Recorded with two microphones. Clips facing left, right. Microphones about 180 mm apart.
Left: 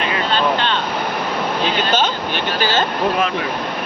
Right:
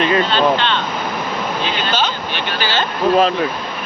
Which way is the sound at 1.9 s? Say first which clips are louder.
Left 2 dB; 50° left (ahead or behind).